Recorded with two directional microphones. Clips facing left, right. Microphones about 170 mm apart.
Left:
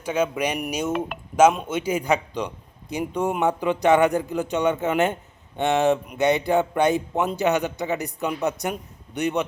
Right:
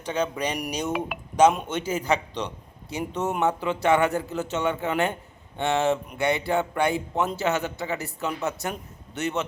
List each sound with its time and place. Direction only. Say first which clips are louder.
0.0 s speech: left 3 dB; 10° left (ahead or behind)
0.9 s speech: left 2 dB; 5° right (ahead or behind)
1.4 s speech: left 2 dB; 5° left (ahead or behind)